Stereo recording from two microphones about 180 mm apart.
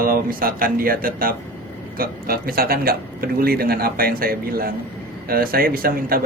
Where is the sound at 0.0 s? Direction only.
55° right (ahead or behind).